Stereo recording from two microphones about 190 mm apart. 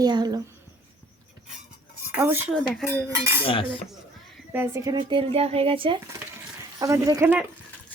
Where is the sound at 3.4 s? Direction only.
30° left (ahead or behind).